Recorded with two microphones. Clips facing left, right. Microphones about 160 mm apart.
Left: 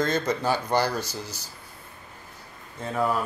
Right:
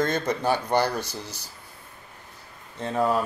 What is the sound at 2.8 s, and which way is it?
Speech, 25° right (ahead or behind).